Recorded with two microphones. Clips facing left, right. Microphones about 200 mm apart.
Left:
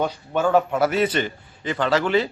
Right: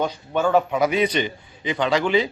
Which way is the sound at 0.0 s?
5° left (ahead or behind).